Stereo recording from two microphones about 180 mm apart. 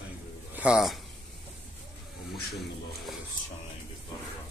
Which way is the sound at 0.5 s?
5° right (ahead or behind).